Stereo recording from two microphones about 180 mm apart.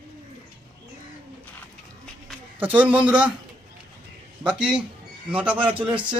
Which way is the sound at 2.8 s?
5° right (ahead or behind).